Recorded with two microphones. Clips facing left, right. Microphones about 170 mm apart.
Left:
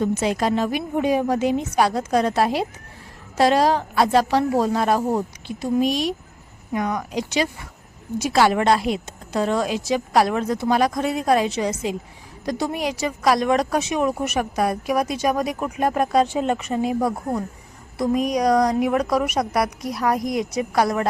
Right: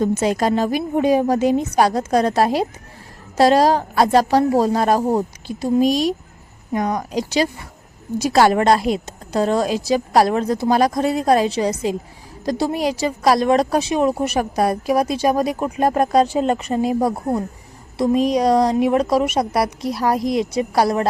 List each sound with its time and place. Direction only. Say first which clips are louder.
0.0 s a woman's voice: right 3 dB; 40° right (ahead or behind)